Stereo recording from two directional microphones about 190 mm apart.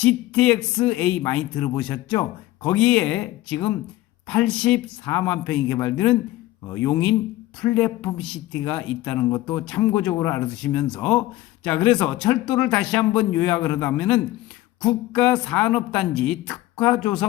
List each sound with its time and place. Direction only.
0.0 s a man's voice: 5° left (ahead or behind)